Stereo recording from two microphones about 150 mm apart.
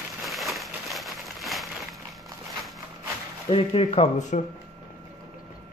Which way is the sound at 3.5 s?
40° left (ahead or behind).